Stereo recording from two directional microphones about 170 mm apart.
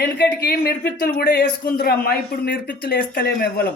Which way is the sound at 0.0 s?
70° left (ahead or behind).